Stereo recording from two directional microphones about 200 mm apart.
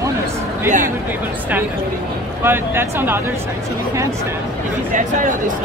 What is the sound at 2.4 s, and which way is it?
Speech, 10° right (ahead or behind).